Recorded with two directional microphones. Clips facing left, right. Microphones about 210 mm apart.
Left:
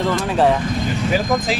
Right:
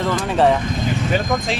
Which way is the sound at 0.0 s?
Centre (ahead or behind).